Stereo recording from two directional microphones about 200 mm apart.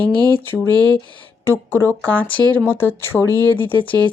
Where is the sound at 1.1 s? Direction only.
10° left (ahead or behind).